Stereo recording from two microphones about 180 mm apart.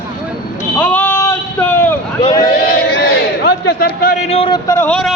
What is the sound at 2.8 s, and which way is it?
Crowd, 70° left (ahead or behind).